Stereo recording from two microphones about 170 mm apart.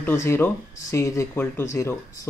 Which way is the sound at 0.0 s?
15° left (ahead or behind).